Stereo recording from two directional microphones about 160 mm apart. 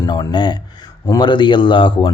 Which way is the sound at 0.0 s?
25° left (ahead or behind).